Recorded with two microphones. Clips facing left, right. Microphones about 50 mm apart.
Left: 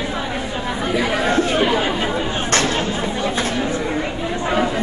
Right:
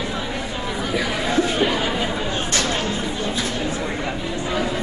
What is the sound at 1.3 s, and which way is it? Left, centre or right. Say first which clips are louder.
Chatter: even; left.